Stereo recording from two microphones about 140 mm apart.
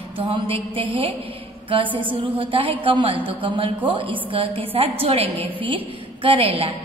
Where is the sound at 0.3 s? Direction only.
40° right (ahead or behind).